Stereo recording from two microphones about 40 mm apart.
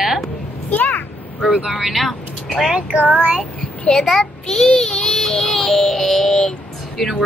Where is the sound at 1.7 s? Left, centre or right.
Centre.